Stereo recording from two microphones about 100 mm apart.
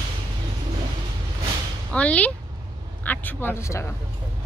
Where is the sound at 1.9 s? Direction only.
15° left (ahead or behind).